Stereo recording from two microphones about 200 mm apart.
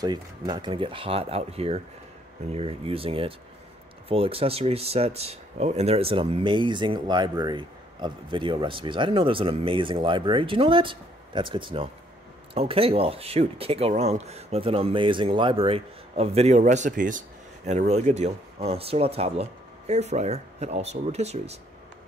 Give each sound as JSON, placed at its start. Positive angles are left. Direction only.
{"t": 0.0, "sound": "speech", "side_deg": -20}